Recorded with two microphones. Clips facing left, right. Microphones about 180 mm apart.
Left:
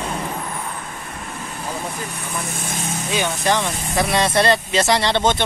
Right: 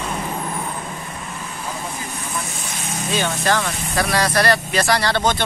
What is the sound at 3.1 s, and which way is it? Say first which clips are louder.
Speech: even; 15° left (ahead or behind).